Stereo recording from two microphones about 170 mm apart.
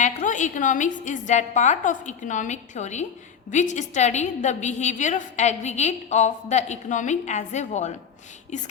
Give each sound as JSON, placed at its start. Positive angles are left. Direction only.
{"t": 0.0, "sound": "a woman's voice", "side_deg": 45}